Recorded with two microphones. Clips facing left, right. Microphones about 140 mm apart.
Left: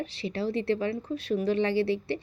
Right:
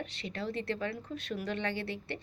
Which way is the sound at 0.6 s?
25° left (ahead or behind).